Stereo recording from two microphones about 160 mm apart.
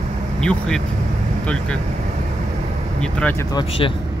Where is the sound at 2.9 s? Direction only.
5° left (ahead or behind).